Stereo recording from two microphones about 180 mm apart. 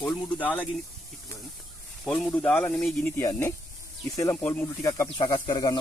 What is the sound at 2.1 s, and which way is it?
Speech, 5° left (ahead or behind).